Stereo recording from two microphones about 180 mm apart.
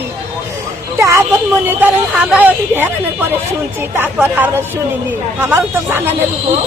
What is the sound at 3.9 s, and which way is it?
Speech, 10° right (ahead or behind).